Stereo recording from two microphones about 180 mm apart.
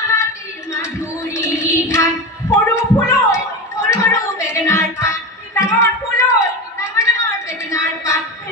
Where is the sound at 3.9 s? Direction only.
15° left (ahead or behind).